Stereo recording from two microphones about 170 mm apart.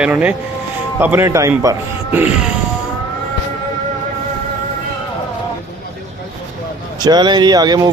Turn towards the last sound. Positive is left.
turn(degrees=-20)  # may be behind; listen again after turning